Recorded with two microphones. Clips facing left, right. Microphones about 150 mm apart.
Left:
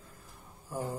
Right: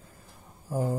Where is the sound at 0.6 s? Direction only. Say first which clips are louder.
Right 7 dB; 35° right (ahead or behind).